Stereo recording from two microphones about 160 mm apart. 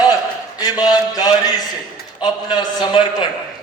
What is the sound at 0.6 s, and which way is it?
Mantra, 25° left (ahead or behind).